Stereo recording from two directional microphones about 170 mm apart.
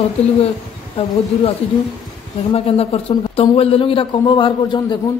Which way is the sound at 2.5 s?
35° left (ahead or behind).